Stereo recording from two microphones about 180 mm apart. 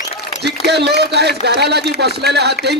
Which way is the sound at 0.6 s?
65° right (ahead or behind).